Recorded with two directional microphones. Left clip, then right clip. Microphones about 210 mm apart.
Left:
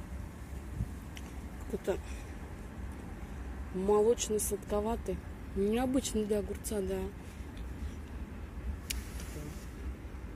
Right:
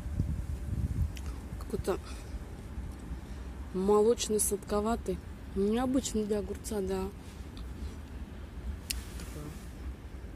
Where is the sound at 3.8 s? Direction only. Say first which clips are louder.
Right 2 dB; 30° right (ahead or behind).